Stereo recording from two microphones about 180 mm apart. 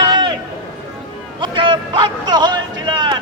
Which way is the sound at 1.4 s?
30° right (ahead or behind).